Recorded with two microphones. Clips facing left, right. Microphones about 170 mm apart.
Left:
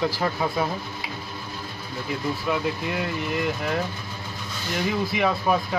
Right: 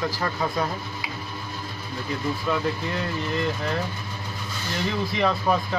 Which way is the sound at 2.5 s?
15° left (ahead or behind).